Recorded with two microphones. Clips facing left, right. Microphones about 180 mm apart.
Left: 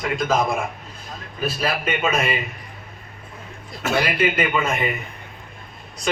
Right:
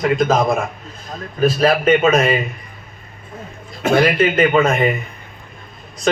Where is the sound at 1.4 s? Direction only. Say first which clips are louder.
Right 10 dB; 45° right (ahead or behind).